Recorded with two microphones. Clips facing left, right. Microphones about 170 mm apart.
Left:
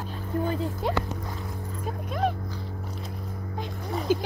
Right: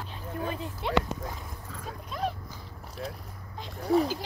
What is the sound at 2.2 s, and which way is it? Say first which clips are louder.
Dog: left 5 dB; 55° left (ahead or behind).